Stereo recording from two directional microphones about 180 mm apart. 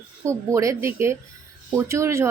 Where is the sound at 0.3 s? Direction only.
15° right (ahead or behind).